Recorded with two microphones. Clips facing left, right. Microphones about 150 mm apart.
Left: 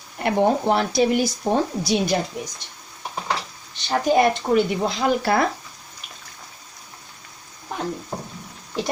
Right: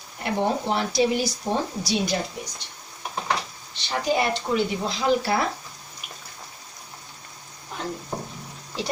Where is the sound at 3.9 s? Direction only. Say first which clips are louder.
Left 6 dB; 50° left (ahead or behind).